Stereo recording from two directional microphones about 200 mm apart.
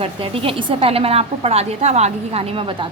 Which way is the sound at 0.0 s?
25° right (ahead or behind).